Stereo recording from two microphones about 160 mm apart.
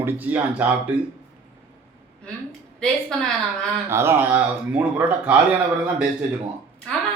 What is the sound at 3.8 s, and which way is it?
Speech, 15° right (ahead or behind).